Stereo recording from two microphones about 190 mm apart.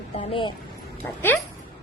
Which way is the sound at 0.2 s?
25° left (ahead or behind).